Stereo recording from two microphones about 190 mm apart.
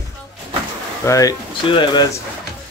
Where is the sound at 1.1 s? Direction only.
20° left (ahead or behind).